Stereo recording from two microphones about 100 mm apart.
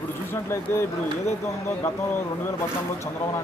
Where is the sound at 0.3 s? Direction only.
25° left (ahead or behind).